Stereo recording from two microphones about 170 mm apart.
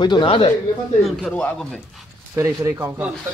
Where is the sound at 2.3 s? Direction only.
15° right (ahead or behind).